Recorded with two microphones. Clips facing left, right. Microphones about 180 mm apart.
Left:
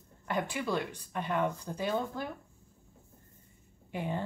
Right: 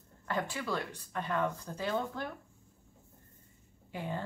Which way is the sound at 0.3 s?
15° left (ahead or behind).